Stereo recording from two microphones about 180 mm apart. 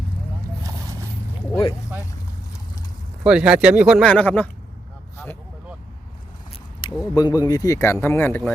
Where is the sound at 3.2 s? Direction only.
5° right (ahead or behind).